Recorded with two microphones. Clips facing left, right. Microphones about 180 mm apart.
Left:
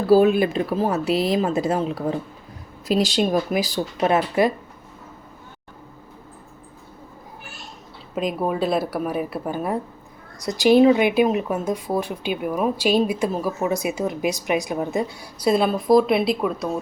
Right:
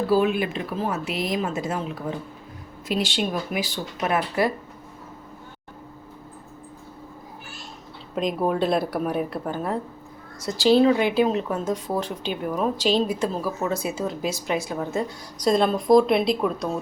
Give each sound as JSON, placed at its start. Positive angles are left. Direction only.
{"t": 0.1, "sound": "speech", "side_deg": 40}
{"t": 8.1, "sound": "a woman's voice", "side_deg": 5}